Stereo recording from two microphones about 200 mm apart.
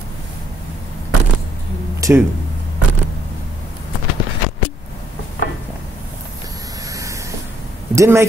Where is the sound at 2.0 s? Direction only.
15° right (ahead or behind).